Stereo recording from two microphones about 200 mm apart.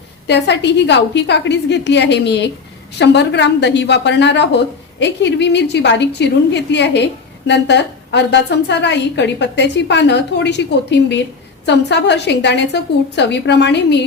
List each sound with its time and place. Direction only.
0.3 s a woman's voice: 60° left (ahead or behind)